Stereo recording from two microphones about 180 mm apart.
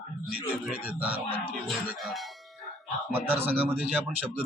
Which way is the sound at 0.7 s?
10° right (ahead or behind).